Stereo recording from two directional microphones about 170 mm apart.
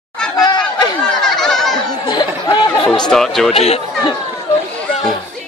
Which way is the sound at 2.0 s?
25° left (ahead or behind).